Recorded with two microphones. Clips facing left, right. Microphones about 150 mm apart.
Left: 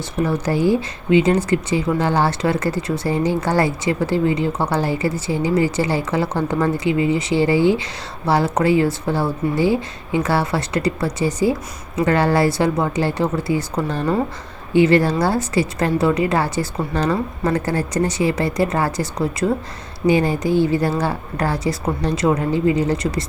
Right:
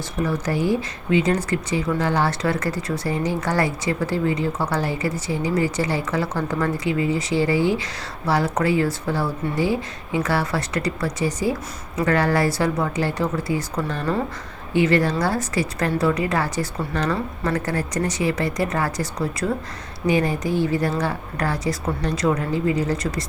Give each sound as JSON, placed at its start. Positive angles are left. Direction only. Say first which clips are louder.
{"t": 0.3, "sound": "speech", "louder": "left 4 dB", "side_deg": 30}